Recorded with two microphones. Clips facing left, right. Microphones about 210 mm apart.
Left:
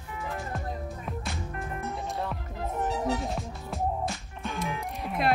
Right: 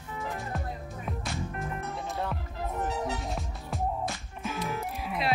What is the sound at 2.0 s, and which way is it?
Music, centre (ahead or behind).